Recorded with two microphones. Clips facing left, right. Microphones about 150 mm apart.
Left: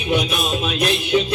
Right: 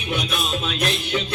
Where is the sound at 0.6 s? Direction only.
15° left (ahead or behind).